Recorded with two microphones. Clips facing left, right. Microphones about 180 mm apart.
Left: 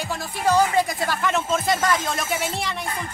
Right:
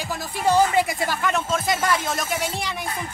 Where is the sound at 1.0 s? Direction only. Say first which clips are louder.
Even; centre (ahead or behind).